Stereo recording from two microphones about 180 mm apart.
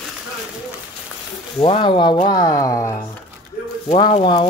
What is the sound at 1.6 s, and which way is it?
Speech, 30° left (ahead or behind).